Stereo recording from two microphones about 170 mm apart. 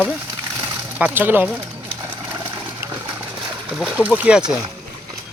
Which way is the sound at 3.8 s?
5° right (ahead or behind).